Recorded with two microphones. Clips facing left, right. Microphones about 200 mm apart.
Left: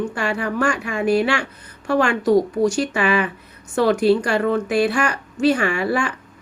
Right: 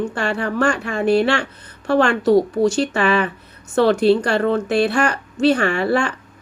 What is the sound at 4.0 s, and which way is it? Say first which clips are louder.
Speech: right 1 dB; 30° right (ahead or behind).